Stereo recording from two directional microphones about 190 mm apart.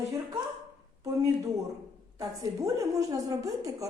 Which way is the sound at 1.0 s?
15° right (ahead or behind).